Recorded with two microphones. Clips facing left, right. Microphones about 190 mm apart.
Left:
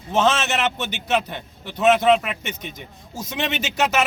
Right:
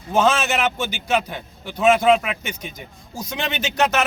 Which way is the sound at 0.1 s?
Centre (ahead or behind).